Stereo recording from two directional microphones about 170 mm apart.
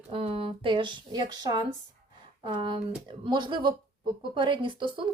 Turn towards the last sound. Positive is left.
turn(degrees=-30)  # may be behind; listen again after turning